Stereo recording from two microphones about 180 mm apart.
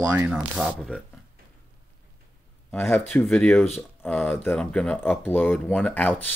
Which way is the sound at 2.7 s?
10° left (ahead or behind).